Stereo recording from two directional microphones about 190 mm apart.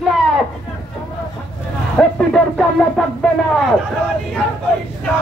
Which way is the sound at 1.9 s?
5° left (ahead or behind).